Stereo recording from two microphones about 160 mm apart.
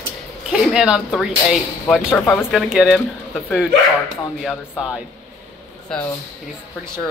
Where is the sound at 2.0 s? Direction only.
5° left (ahead or behind).